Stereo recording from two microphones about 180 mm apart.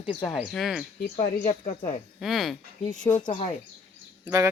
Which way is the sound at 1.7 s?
40° left (ahead or behind).